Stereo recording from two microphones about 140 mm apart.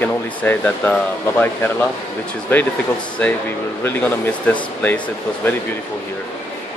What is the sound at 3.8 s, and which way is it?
Speech, 15° left (ahead or behind).